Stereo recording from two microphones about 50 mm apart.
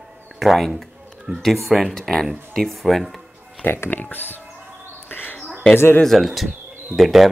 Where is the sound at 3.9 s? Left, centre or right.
Left.